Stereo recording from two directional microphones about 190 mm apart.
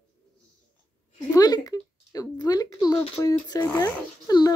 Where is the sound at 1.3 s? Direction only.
20° left (ahead or behind).